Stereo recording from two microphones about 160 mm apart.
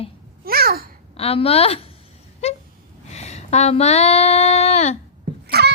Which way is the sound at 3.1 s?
45° left (ahead or behind).